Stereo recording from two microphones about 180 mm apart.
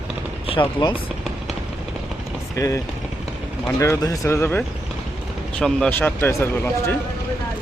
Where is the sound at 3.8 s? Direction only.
15° left (ahead or behind).